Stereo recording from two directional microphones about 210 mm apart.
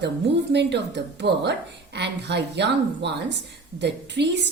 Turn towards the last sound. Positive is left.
turn(degrees=-55)  # may be behind; listen again after turning